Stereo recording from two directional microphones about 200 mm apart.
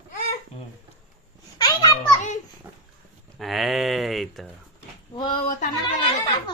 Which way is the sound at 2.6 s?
10° right (ahead or behind).